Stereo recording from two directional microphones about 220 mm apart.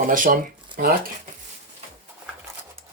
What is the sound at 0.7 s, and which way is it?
Speech, 20° right (ahead or behind).